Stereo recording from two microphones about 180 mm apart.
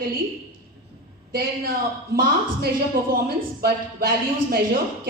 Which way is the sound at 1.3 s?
55° right (ahead or behind).